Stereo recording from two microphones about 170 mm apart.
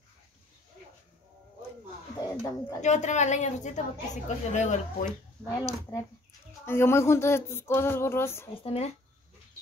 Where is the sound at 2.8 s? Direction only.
45° left (ahead or behind).